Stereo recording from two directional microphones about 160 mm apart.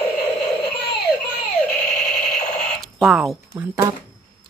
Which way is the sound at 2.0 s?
Centre (ahead or behind).